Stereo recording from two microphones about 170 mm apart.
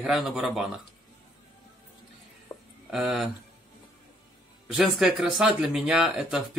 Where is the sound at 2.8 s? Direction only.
5° right (ahead or behind).